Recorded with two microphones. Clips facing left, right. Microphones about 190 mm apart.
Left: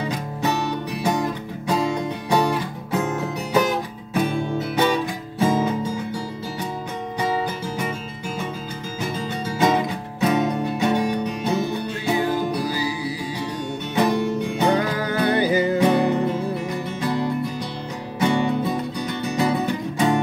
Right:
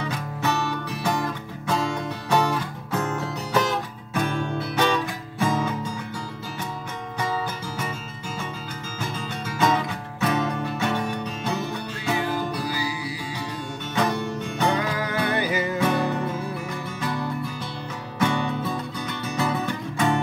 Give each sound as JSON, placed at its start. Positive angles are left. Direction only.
{"t": 0.0, "sound": "music", "side_deg": 15}
{"t": 7.2, "sound": "music", "side_deg": 20}
{"t": 9.6, "sound": "music", "side_deg": 20}
{"t": 12.6, "sound": "music", "side_deg": 25}
{"t": 14.8, "sound": "music", "side_deg": 35}
{"t": 15.8, "sound": "music", "side_deg": 15}